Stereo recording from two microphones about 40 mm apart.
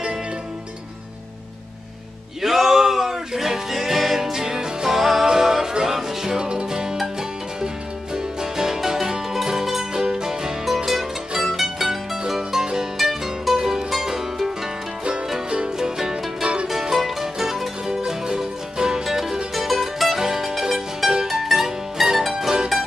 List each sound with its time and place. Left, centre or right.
2.4 s music: centre
15.8 s music: centre
18.0 s music: centre
19.0 s music: centre
20.2 s music: centre